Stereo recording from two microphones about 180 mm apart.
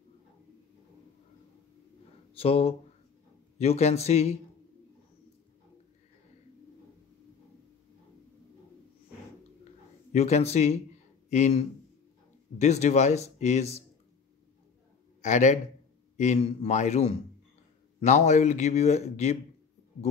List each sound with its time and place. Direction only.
2.3 s speech: 30° left (ahead or behind)
10.1 s speech: 35° left (ahead or behind)
15.2 s speech: 40° left (ahead or behind)